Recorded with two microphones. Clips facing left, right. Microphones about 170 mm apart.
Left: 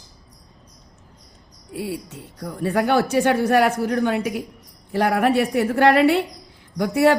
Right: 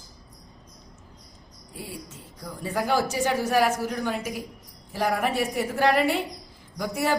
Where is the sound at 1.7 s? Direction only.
65° left (ahead or behind).